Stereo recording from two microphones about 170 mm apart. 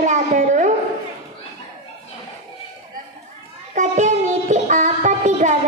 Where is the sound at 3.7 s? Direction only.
45° right (ahead or behind).